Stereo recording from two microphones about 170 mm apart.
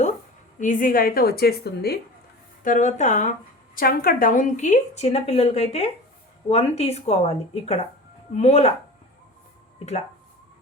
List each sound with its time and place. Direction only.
0.6 s a woman's voice: 50° left (ahead or behind); by 2.0 s 70° left (ahead or behind)
2.6 s speech: 45° left (ahead or behind)
3.8 s speech: 60° left (ahead or behind); by 8.7 s 40° left (ahead or behind)